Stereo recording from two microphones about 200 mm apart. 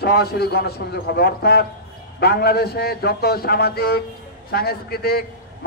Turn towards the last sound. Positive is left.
turn(degrees=50)  # may be behind; listen again after turning